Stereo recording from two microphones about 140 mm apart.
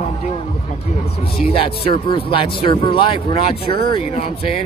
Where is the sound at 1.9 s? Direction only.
40° left (ahead or behind).